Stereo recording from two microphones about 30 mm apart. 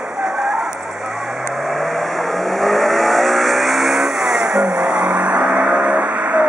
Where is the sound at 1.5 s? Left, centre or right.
Centre.